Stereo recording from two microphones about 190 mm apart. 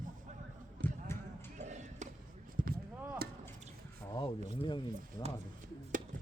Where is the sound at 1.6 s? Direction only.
40° right (ahead or behind).